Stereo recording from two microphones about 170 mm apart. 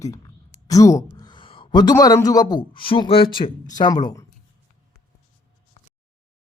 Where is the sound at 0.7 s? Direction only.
20° left (ahead or behind).